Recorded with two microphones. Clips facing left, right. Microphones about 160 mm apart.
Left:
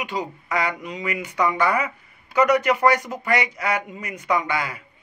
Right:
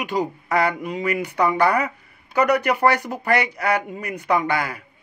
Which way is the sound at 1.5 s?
40° right (ahead or behind).